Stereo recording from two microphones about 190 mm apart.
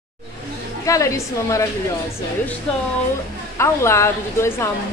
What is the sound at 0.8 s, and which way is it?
Speech, 15° left (ahead or behind).